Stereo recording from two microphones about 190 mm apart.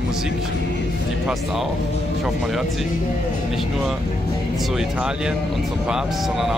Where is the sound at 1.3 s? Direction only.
Centre (ahead or behind).